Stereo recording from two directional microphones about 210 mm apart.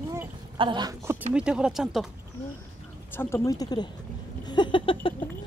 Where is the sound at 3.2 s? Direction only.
10° left (ahead or behind).